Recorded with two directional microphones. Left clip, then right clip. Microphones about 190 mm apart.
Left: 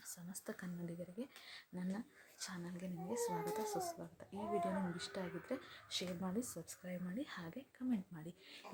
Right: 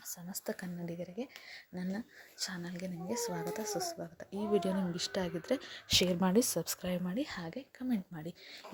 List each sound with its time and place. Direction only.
0.1 s speech: 20° right (ahead or behind)
4.5 s speech: 30° right (ahead or behind)
6.0 s speech: 45° right (ahead or behind)
7.2 s speech: 25° right (ahead or behind)